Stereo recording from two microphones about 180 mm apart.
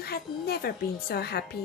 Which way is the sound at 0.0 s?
60° left (ahead or behind).